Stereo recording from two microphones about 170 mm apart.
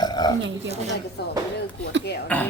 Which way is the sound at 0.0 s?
25° left (ahead or behind).